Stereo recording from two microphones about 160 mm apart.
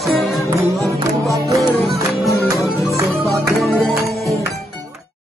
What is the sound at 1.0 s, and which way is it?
Music, 20° right (ahead or behind).